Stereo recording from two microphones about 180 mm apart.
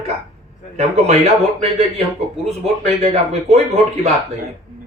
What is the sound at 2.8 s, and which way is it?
Speech, 35° right (ahead or behind).